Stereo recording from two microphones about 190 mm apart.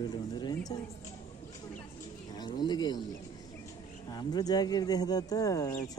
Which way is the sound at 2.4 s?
20° left (ahead or behind).